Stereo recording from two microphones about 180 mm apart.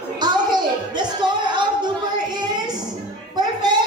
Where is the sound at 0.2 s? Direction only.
25° right (ahead or behind).